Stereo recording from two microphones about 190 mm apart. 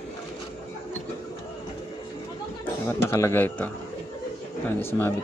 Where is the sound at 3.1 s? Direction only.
15° left (ahead or behind).